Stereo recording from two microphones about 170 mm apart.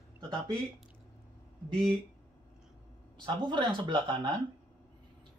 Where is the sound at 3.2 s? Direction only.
25° right (ahead or behind).